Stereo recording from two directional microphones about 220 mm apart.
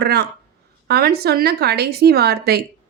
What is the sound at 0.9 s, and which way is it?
A woman's voice, 45° right (ahead or behind).